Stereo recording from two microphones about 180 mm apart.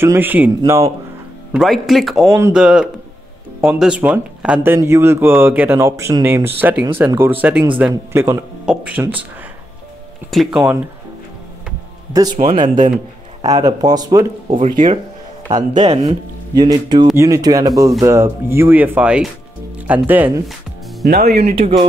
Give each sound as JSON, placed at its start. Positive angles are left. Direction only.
{"t": 0.0, "sound": "speech", "side_deg": -10}
{"t": 1.5, "sound": "speech", "side_deg": 0}
{"t": 10.3, "sound": "speech", "side_deg": 0}
{"t": 12.1, "sound": "speech", "side_deg": -20}
{"t": 12.4, "sound": "speech", "side_deg": -45}
{"t": 13.5, "sound": "speech", "side_deg": -20}
{"t": 14.7, "sound": "speech", "side_deg": -45}
{"t": 16.5, "sound": "speech", "side_deg": -25}
{"t": 21.0, "sound": "speech", "side_deg": -60}
{"t": 21.5, "sound": "speech", "side_deg": -35}